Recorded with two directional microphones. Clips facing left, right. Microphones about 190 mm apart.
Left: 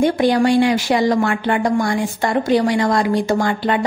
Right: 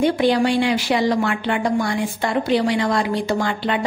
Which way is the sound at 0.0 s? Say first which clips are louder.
Left 2 dB; 45° left (ahead or behind).